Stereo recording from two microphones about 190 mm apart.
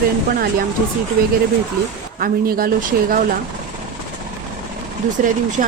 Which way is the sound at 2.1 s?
50° right (ahead or behind).